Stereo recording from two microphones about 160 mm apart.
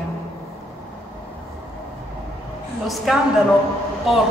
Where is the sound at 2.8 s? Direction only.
Centre (ahead or behind).